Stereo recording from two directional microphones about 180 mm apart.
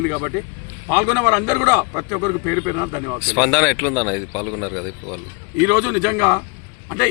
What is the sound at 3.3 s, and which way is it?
Speech, 5° left (ahead or behind).